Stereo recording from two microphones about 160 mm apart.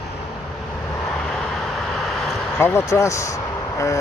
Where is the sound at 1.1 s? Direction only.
5° left (ahead or behind).